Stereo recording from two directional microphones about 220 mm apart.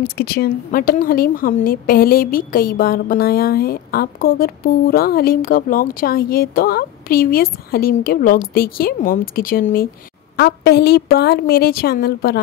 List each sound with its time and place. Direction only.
0.2 s a woman's voice: 45° left (ahead or behind)